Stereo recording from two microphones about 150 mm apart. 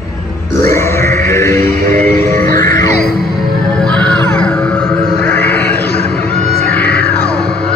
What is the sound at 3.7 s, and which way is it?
Music, 5° left (ahead or behind).